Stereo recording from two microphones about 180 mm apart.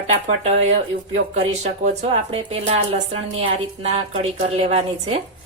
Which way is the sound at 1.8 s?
35° right (ahead or behind).